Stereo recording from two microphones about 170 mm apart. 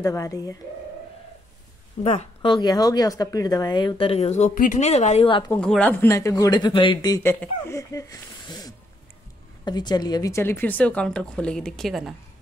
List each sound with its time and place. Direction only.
0.0 s speech: 20° left (ahead or behind)
2.4 s speech: 25° left (ahead or behind)
5.5 s speech: 5° left (ahead or behind); by 7.2 s 30° left (ahead or behind)
7.2 s a woman's voice: 15° left (ahead or behind); by 12.1 s centre (ahead or behind)